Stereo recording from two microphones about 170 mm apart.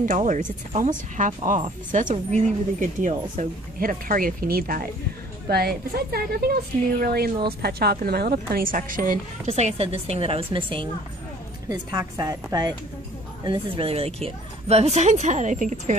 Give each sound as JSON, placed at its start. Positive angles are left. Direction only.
{"t": 0.0, "sound": "a woman's voice", "side_deg": -50}
{"t": 9.5, "sound": "a woman's voice", "side_deg": -40}
{"t": 11.7, "sound": "a woman's voice", "side_deg": -20}